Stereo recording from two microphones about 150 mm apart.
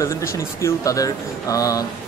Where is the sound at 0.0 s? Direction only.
20° left (ahead or behind).